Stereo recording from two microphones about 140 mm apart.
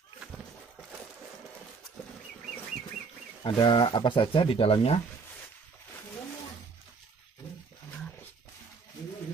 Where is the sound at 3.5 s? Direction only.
30° left (ahead or behind).